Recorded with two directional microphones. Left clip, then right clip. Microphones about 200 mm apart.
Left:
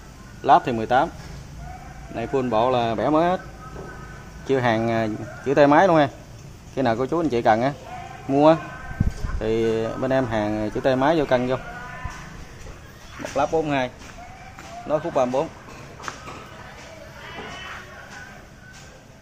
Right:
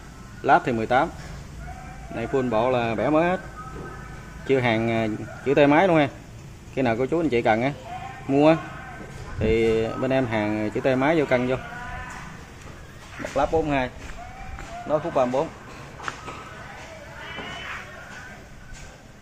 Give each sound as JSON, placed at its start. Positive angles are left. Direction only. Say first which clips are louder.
{"t": 0.4, "sound": "speech", "louder": "left 2 dB", "side_deg": 0}
{"t": 2.1, "sound": "speech", "louder": "left 2 dB", "side_deg": 5}
{"t": 4.5, "sound": "speech", "louder": "left 1 dB", "side_deg": 5}
{"t": 13.3, "sound": "a man's voice", "louder": "left 1 dB", "side_deg": 0}